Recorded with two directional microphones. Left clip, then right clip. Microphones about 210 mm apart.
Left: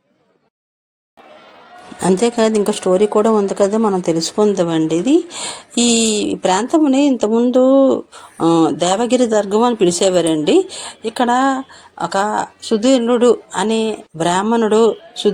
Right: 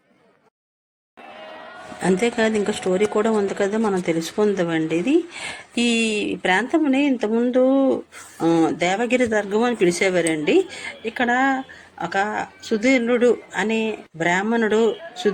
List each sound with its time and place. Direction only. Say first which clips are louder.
2.0 s speech: left 5 dB; 25° left (ahead or behind)
8.4 s a woman's voice: left 5 dB; centre (ahead or behind)
8.9 s speech: left 5 dB; 25° left (ahead or behind)
10.0 s a woman's voice: left 6 dB; centre (ahead or behind)
12.4 s speech: left 6 dB; 25° left (ahead or behind)
12.8 s a woman's voice: left 5 dB; centre (ahead or behind)